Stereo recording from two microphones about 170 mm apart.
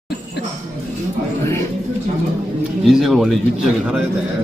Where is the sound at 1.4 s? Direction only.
15° left (ahead or behind).